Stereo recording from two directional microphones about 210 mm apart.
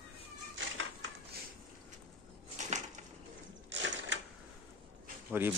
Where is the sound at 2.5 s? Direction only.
35° right (ahead or behind).